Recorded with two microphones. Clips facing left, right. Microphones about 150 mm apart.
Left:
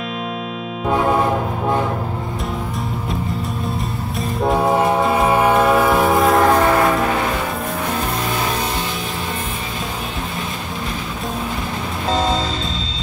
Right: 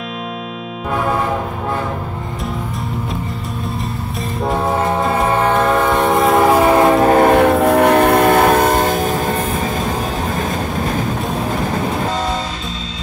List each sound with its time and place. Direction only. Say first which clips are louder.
5.2 s train: even; 10° left (ahead or behind)
6.6 s train: right 4 dB; 20° right (ahead or behind)
7.0 s train: right 9 dB; 50° right (ahead or behind)